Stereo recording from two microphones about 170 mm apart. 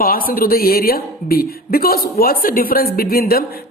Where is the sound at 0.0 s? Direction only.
60° left (ahead or behind).